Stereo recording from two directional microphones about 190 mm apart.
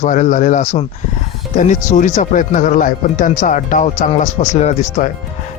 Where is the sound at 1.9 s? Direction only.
40° left (ahead or behind).